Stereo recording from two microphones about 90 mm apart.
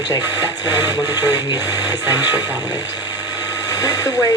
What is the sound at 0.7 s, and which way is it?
Music, 20° right (ahead or behind).